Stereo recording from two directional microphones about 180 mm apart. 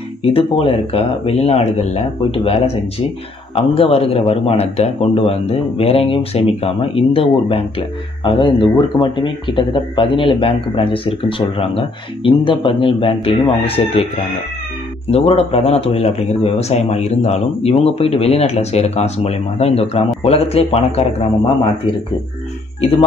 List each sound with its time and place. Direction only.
0.2 s a man's voice: 30° left (ahead or behind)
15.0 s a man's voice: 35° left (ahead or behind)